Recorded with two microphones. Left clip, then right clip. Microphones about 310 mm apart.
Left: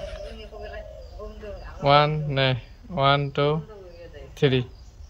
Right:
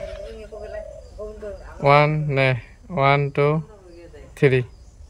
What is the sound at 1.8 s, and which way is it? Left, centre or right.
Speech, centre.